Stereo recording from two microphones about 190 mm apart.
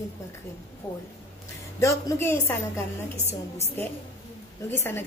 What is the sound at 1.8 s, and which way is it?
A woman's voice, 15° left (ahead or behind).